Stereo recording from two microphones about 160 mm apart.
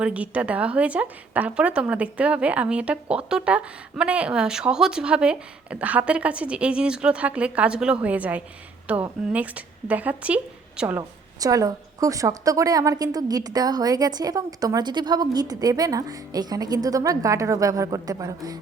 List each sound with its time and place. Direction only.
0.0 s a woman's voice: 10° right (ahead or behind)
11.3 s a woman's voice: 20° right (ahead or behind)